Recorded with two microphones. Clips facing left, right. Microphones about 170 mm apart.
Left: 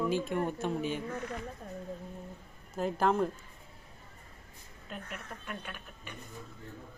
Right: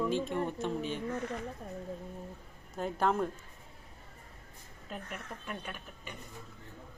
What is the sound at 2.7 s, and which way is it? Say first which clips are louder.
Speech: left 2 dB; centre (ahead or behind).